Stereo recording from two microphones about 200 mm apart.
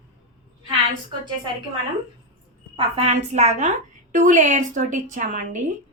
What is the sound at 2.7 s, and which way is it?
A woman's voice, 30° right (ahead or behind).